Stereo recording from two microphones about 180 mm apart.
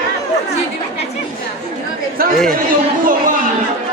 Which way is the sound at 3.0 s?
50° right (ahead or behind).